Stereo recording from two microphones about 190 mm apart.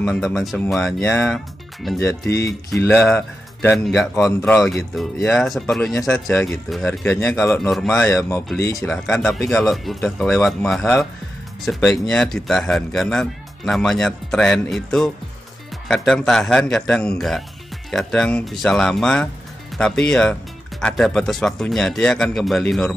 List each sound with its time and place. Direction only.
0.0 s speech: 5° left (ahead or behind)
1.0 s speech: 15° left (ahead or behind)
1.3 s speech: centre (ahead or behind)
2.0 s speech: 15° left (ahead or behind)
7.2 s speech: 15° left (ahead or behind)
7.5 s speech: 5° left (ahead or behind)
7.9 s speech: 15° left (ahead or behind)
8.7 s speech: centre (ahead or behind)